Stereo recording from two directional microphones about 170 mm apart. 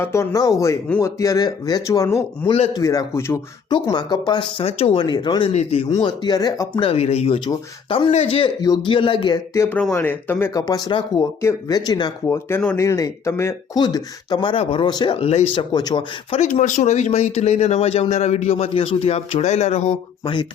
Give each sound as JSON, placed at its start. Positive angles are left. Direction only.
{"t": 0.0, "sound": "speech", "side_deg": 15}
{"t": 8.6, "sound": "speech", "side_deg": 25}
{"t": 9.6, "sound": "speech", "side_deg": 10}
{"t": 15.5, "sound": "speech", "side_deg": 25}
{"t": 16.4, "sound": "speech", "side_deg": 45}